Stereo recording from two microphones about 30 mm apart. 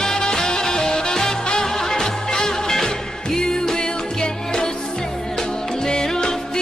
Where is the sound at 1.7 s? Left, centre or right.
Centre.